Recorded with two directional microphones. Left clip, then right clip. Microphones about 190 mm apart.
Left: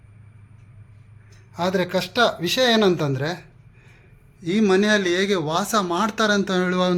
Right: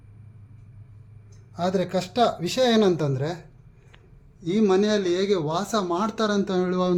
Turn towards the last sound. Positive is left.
turn(degrees=0)  # may be behind; listen again after turning